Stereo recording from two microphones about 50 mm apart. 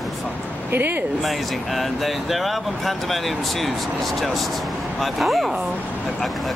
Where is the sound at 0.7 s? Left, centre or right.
Right.